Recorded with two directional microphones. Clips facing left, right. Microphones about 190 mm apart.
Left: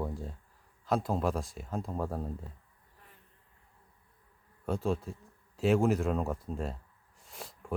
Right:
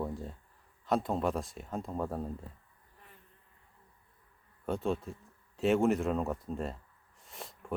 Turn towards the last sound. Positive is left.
turn(degrees=0)  # may be behind; listen again after turning